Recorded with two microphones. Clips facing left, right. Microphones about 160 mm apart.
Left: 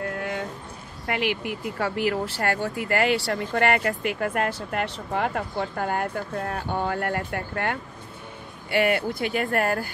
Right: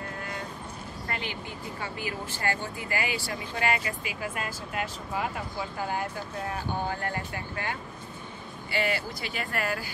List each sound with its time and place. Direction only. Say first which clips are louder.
1.0 s speech: left 10 dB; 75° left (ahead or behind); by 9.8 s 55° left (ahead or behind)